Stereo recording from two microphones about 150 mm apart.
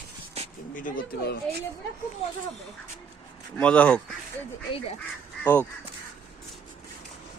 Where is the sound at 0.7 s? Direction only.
65° left (ahead or behind).